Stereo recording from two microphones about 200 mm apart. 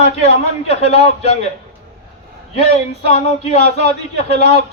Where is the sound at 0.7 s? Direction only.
30° left (ahead or behind).